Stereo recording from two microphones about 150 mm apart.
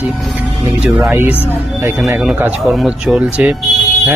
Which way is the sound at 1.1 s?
15° right (ahead or behind).